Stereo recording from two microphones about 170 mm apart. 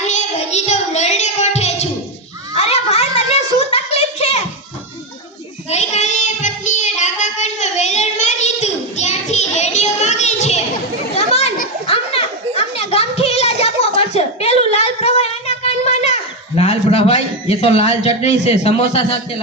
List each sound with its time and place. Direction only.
0.0 s child singing: 45° left (ahead or behind)
2.6 s a sound: 40° left (ahead or behind)
5.7 s child singing: 40° left (ahead or behind)
11.1 s children playing: 40° left (ahead or behind)
16.6 s a man's voice: 35° left (ahead or behind)